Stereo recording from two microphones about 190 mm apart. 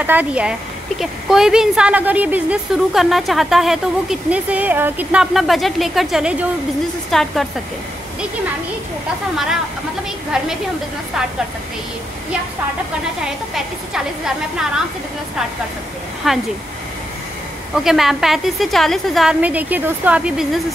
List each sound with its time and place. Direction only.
0.0 s a woman's voice: 10° right (ahead or behind)
10.3 s a woman's voice: 5° right (ahead or behind)
13.9 s a woman's voice: 5° right (ahead or behind)
16.2 s a woman's voice: centre (ahead or behind)
17.8 s a woman's voice: centre (ahead or behind)